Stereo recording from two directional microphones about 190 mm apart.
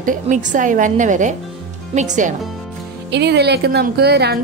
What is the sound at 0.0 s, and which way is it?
A woman's voice, 40° right (ahead or behind).